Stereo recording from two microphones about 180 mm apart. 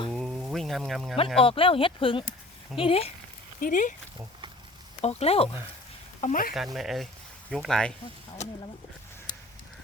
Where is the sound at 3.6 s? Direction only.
45° left (ahead or behind).